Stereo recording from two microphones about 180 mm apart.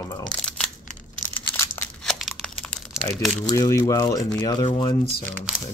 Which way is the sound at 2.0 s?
Centre (ahead or behind).